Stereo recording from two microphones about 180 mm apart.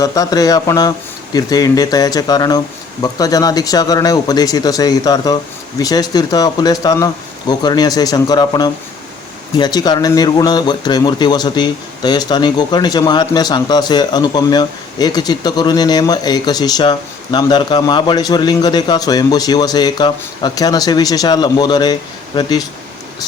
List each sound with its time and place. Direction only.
0.0 s speech: 20° left (ahead or behind)